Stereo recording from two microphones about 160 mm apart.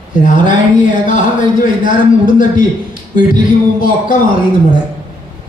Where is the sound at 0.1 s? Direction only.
55° left (ahead or behind).